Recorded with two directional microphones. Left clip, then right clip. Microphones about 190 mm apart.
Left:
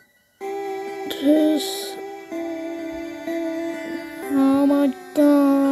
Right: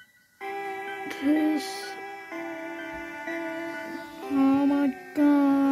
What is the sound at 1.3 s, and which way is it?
Owl, 60° left (ahead or behind).